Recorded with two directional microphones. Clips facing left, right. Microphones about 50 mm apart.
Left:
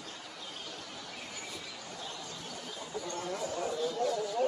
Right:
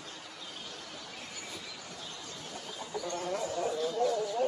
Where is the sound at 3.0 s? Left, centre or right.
Right.